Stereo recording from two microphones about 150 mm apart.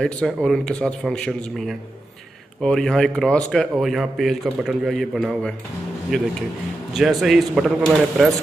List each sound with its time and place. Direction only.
0.0 s speech: 5° left (ahead or behind)
7.0 s speech: centre (ahead or behind)